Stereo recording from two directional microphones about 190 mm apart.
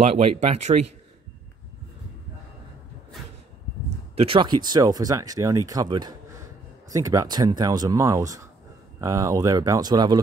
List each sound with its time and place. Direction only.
0.0 s speech: 35° right (ahead or behind)
4.1 s speech: 30° right (ahead or behind)